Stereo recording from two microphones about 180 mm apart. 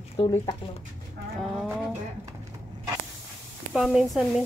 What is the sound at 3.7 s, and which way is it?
Speech, centre (ahead or behind).